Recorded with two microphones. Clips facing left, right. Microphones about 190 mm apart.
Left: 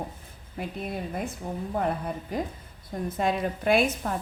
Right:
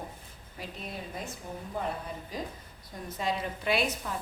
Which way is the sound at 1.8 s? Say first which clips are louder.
Left 6 dB; 55° left (ahead or behind).